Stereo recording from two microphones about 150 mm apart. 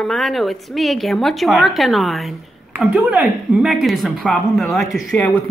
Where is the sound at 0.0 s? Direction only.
Centre (ahead or behind).